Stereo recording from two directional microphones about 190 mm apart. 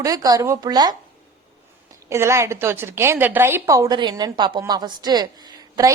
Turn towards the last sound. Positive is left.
turn(degrees=-20)  # may be behind; listen again after turning